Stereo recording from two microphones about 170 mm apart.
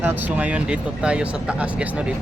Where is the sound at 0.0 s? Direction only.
10° right (ahead or behind).